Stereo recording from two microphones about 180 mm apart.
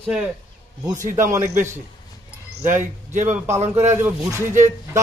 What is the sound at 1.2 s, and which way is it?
Speech, 15° right (ahead or behind).